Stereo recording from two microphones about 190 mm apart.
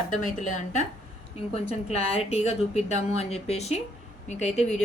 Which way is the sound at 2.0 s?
35° left (ahead or behind).